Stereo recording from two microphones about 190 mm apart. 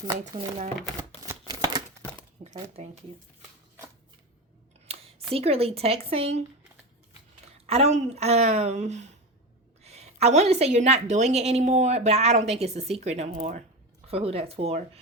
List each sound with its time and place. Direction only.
0.3 s speech: 50° right (ahead or behind)
1.2 s a sound: 20° right (ahead or behind)
2.4 s speech: 35° right (ahead or behind)
4.9 s a sound: 30° right (ahead or behind)
5.3 s a woman's voice: 30° right (ahead or behind)
7.4 s a woman's voice: 35° right (ahead or behind)